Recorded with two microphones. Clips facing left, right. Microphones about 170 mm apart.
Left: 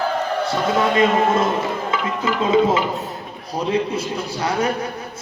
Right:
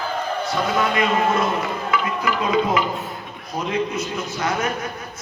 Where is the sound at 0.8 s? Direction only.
25° left (ahead or behind).